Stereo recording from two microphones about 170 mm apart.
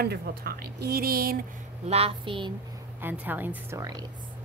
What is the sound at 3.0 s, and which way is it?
A woman's voice, 10° right (ahead or behind).